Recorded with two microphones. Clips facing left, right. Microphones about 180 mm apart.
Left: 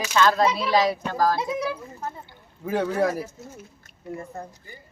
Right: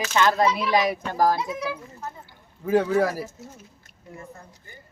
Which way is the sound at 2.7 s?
5° right (ahead or behind).